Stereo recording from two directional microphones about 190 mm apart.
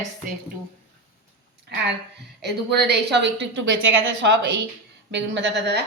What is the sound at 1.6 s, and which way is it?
A woman's voice, 60° right (ahead or behind).